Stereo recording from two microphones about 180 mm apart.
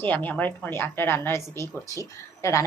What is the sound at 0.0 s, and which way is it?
Speech, 10° left (ahead or behind).